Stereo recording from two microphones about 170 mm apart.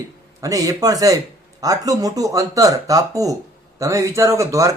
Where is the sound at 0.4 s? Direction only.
20° right (ahead or behind).